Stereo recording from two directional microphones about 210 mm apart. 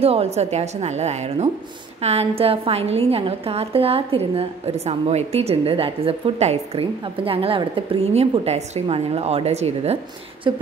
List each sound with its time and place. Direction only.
0.0 s a woman's voice: 30° right (ahead or behind)